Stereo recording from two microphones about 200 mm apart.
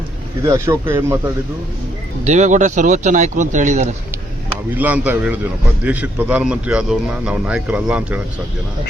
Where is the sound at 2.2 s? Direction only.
35° right (ahead or behind).